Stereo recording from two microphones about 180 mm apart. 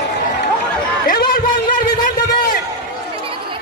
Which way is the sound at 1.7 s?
50° left (ahead or behind).